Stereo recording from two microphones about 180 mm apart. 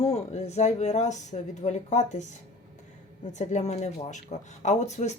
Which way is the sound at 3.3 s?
40° left (ahead or behind).